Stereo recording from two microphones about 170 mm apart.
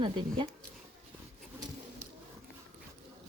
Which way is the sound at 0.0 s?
30° right (ahead or behind).